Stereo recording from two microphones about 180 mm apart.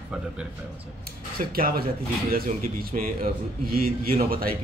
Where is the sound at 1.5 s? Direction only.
55° right (ahead or behind).